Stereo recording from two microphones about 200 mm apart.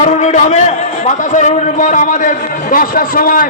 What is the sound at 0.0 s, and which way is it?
A man's voice, 35° left (ahead or behind).